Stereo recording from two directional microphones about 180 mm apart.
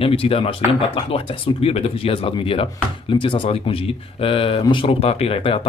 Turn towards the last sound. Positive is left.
turn(degrees=30)  # may be behind; listen again after turning